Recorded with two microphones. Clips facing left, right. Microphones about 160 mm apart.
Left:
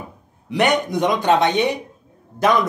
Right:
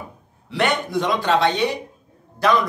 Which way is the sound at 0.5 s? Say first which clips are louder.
Left 3 dB; 20° left (ahead or behind).